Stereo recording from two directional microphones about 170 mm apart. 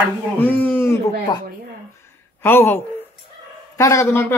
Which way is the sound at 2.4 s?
10° left (ahead or behind).